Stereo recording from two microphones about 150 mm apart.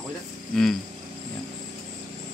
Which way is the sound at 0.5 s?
5° left (ahead or behind).